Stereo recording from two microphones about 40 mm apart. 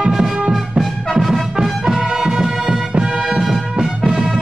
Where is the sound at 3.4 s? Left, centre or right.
Centre.